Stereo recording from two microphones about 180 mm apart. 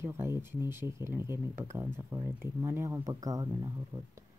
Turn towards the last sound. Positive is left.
turn(degrees=-20)  # may be behind; listen again after turning